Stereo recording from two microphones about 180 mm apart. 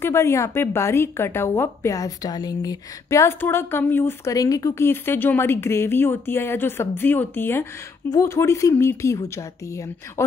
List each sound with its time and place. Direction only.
0.0 s a woman's voice: 15° left (ahead or behind)